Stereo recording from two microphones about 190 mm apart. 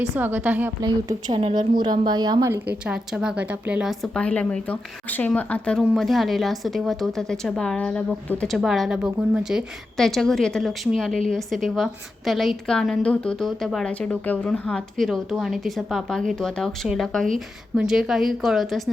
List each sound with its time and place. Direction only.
0.2 s a woman's voice: 10° right (ahead or behind)
0.8 s a woman's voice: 20° right (ahead or behind)
2.8 s a woman's voice: 5° right (ahead or behind)